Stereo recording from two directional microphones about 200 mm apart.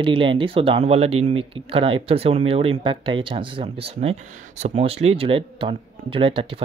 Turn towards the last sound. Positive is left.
turn(degrees=-25)  # may be behind; listen again after turning